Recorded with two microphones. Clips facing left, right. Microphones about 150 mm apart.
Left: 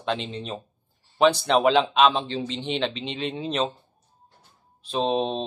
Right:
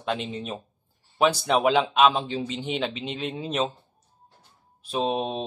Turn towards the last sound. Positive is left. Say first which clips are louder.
# left 2 dB
turn(degrees=-5)  # may be behind; listen again after turning